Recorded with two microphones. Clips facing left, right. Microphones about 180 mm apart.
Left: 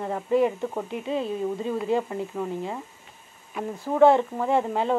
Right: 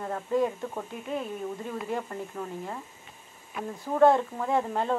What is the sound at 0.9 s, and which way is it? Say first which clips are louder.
Speech: left 5 dB; 90° left.